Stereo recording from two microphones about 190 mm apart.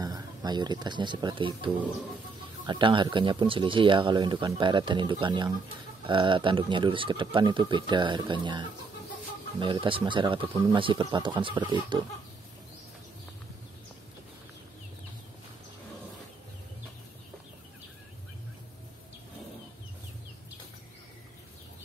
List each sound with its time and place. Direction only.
0.0 s speech: 20° right (ahead or behind)